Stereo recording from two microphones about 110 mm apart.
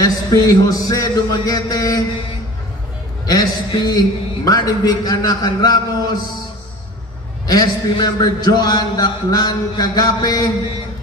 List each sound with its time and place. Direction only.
0.0 s a man's voice: 30° left (ahead or behind)
3.3 s a man's voice: 35° left (ahead or behind)
7.4 s a man's voice: 35° left (ahead or behind)